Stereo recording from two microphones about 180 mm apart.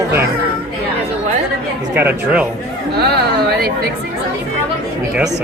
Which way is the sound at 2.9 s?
65° right (ahead or behind).